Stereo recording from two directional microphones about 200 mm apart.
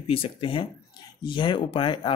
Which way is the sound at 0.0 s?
30° left (ahead or behind).